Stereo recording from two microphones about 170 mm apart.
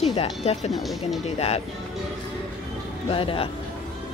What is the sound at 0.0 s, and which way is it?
Speech, 35° left (ahead or behind).